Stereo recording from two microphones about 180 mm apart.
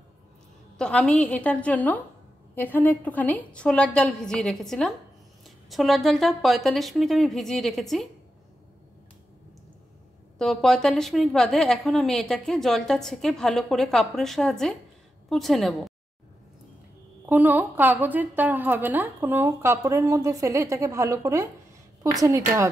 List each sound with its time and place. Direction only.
0.7 s a woman's voice: 5° left (ahead or behind)
10.4 s a woman's voice: centre (ahead or behind)
17.3 s a woman's voice: 10° right (ahead or behind)